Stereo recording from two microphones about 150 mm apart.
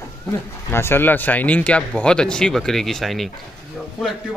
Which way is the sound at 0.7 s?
15° left (ahead or behind).